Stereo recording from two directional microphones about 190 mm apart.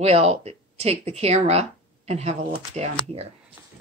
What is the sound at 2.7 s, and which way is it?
Cutlery, 35° right (ahead or behind).